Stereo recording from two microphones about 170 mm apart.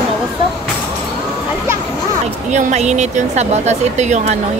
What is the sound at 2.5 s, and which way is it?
Speech, 40° right (ahead or behind).